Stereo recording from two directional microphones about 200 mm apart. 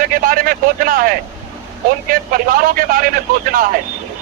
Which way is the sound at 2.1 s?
45° right (ahead or behind).